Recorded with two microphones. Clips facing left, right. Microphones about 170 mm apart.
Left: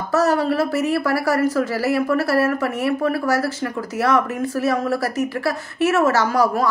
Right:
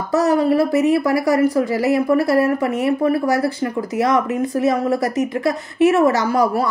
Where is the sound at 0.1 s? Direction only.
15° right (ahead or behind).